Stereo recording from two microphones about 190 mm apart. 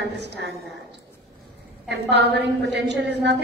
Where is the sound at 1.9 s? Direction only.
65° right (ahead or behind).